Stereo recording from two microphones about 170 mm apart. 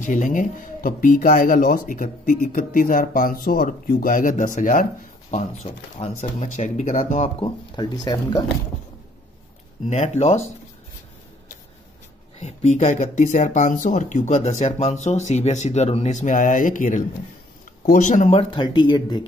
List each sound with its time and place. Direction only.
0.0 s speech: 50° left (ahead or behind)
5.3 s speech: 40° left (ahead or behind)
9.8 s speech: 40° left (ahead or behind)
12.4 s speech: 40° left (ahead or behind); by 19.2 s 25° left (ahead or behind)